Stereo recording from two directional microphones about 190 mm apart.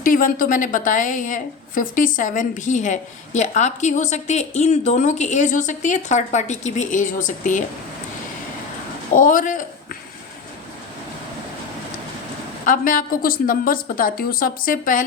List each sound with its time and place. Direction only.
0.0 s a woman's voice: 45° left (ahead or behind)
9.1 s a woman's voice: 45° left (ahead or behind)
12.6 s a woman's voice: 45° left (ahead or behind)